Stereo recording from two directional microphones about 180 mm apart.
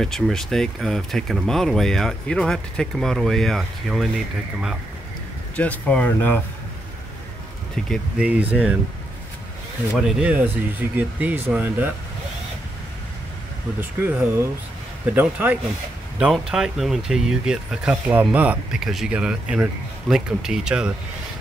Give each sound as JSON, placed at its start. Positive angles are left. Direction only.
{"t": 0.0, "sound": "speech", "side_deg": 0}
{"t": 5.6, "sound": "speech", "side_deg": 5}
{"t": 7.7, "sound": "speech", "side_deg": 5}
{"t": 8.3, "sound": "speech", "side_deg": -10}
{"t": 9.9, "sound": "speech", "side_deg": -5}
{"t": 13.7, "sound": "speech", "side_deg": -10}
{"t": 15.1, "sound": "speech", "side_deg": -10}